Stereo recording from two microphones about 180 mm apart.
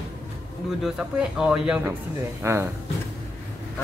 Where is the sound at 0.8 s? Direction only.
5° right (ahead or behind).